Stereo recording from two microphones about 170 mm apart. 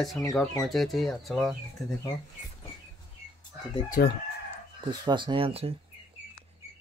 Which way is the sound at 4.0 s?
65° left (ahead or behind).